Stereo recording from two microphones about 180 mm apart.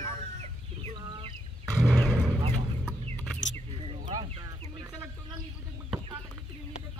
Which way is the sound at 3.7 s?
30° right (ahead or behind).